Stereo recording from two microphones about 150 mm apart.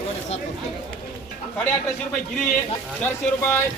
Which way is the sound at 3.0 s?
15° left (ahead or behind).